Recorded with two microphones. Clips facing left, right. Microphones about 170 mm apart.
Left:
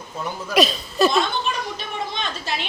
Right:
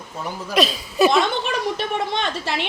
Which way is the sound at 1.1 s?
80° right.